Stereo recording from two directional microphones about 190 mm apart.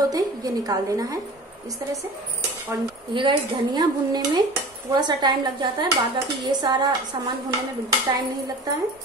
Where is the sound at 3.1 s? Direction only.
25° right (ahead or behind).